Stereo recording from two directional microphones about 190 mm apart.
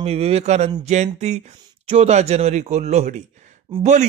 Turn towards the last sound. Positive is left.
turn(degrees=-35)  # may be behind; listen again after turning